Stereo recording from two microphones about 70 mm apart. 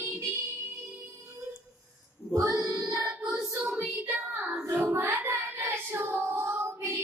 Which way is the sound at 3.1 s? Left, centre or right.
Centre.